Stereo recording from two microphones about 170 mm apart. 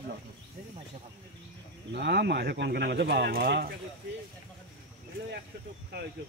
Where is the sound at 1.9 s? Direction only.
75° right (ahead or behind).